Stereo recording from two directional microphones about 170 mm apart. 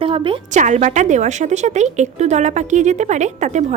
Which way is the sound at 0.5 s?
45° right (ahead or behind).